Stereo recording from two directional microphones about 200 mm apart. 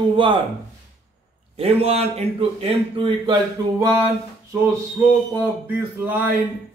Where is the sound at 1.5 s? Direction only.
30° right (ahead or behind).